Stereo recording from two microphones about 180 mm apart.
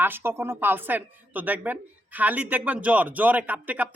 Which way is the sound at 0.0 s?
10° right (ahead or behind).